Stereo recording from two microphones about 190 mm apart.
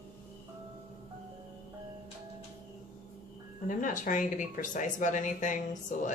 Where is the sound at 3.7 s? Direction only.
45° left (ahead or behind).